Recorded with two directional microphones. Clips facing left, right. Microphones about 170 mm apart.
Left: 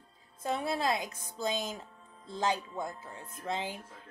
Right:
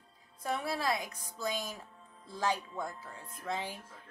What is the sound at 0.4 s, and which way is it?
Speech, 25° left (ahead or behind).